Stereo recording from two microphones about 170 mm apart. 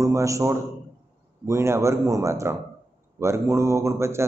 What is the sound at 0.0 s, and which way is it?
A man's voice, 20° right (ahead or behind).